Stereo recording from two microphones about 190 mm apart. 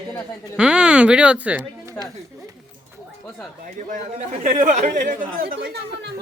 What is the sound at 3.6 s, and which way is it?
Speech, 40° right (ahead or behind).